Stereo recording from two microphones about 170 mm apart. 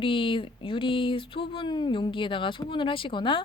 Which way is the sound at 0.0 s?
30° left (ahead or behind).